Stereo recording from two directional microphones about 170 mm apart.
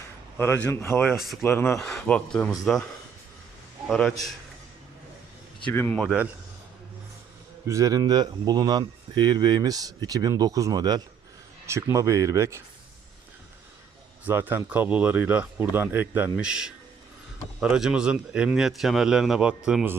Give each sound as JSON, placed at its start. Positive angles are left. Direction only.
{"t": 0.3, "sound": "a man's voice", "side_deg": 10}
{"t": 3.8, "sound": "a man's voice", "side_deg": 5}
{"t": 5.7, "sound": "a man's voice", "side_deg": 10}
{"t": 7.7, "sound": "speech", "side_deg": -20}
{"t": 14.3, "sound": "a man's voice", "side_deg": -10}